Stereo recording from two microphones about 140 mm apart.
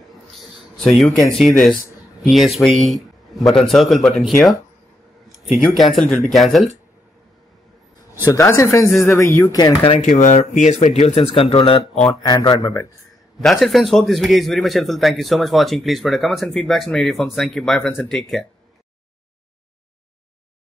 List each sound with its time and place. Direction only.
0.4 s a sound: centre (ahead or behind)
1.4 s a man's voice: centre (ahead or behind)
5.8 s a man's voice: centre (ahead or behind)
8.1 s speech: 20° left (ahead or behind)
9.8 s speech: 50° left (ahead or behind)
12.2 s speech: 30° left (ahead or behind)
13.4 s a man's voice: centre (ahead or behind)